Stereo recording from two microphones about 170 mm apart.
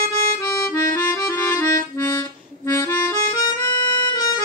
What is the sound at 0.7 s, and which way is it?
Accordion, 15° left (ahead or behind).